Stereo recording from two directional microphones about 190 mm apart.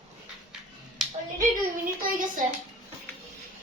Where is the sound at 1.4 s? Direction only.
45° right (ahead or behind).